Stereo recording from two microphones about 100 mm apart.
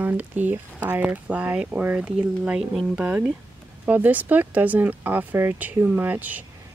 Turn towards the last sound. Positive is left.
turn(degrees=-15)  # may be behind; listen again after turning